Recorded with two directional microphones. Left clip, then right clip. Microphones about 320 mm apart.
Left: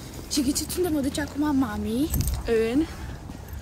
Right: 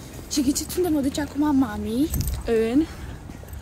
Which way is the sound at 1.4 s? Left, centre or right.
Right.